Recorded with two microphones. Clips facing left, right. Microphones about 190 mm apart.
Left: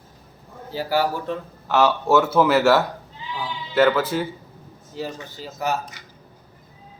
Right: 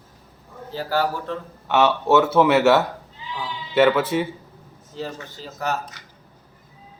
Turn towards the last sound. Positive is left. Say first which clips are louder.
# left 1 dB
turn(degrees=5)  # may be behind; listen again after turning